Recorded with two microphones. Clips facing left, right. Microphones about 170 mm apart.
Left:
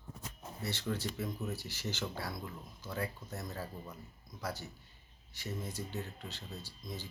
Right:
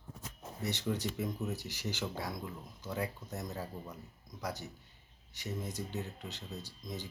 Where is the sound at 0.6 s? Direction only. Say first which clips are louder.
Right 2 dB; 20° right (ahead or behind).